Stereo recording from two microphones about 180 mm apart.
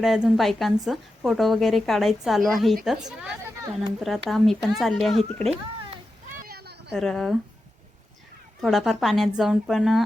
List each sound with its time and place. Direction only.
0.0 s a woman's voice: centre (ahead or behind)
6.4 s a sound: 60° right (ahead or behind)
6.9 s a woman's voice: 5° left (ahead or behind)
8.6 s a woman's voice: centre (ahead or behind)